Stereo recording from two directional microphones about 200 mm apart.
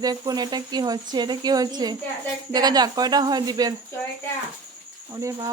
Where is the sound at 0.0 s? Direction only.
20° right (ahead or behind).